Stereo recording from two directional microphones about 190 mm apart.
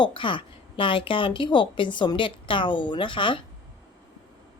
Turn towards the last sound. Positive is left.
turn(degrees=25)  # may be behind; listen again after turning